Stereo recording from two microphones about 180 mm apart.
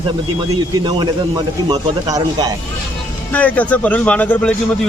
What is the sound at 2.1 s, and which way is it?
Speech, 20° right (ahead or behind).